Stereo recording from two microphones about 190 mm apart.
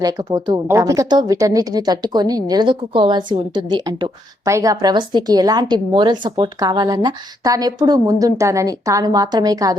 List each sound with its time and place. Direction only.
0.0 s speech: 20° right (ahead or behind)